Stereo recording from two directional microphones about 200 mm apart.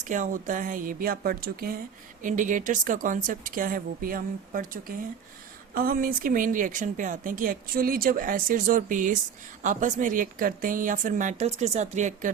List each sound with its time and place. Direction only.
0.0 s a woman's voice: 40° right (ahead or behind)